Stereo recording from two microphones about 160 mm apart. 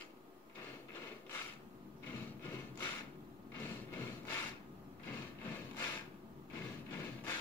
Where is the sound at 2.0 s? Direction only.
15° left (ahead or behind).